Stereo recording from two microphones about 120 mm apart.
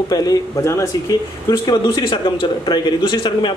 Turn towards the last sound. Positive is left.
turn(degrees=40)  # may be behind; listen again after turning